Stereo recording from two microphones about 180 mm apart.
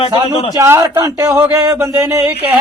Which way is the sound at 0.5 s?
20° right (ahead or behind).